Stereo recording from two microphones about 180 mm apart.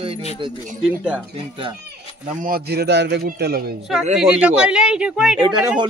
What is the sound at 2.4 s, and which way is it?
A man's voice, 60° right (ahead or behind).